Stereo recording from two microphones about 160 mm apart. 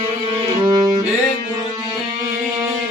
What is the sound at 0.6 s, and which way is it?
Music, 25° right (ahead or behind).